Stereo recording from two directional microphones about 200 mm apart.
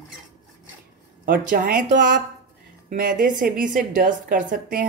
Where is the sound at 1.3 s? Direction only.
45° right (ahead or behind).